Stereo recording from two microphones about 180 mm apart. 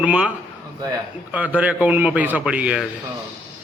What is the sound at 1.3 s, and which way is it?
A man's voice, 10° right (ahead or behind).